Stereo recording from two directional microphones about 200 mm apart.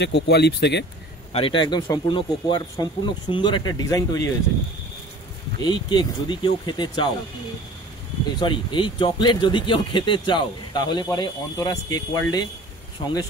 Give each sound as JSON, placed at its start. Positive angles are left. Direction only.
{"t": 0.0, "sound": "speech", "side_deg": 55}
{"t": 1.3, "sound": "speech", "side_deg": 25}
{"t": 5.6, "sound": "speech", "side_deg": 20}
{"t": 8.4, "sound": "speech", "side_deg": 25}